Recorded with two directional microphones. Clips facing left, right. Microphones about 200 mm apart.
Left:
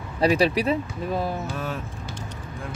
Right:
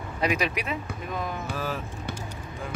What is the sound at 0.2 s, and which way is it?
Speech, 30° left (ahead or behind).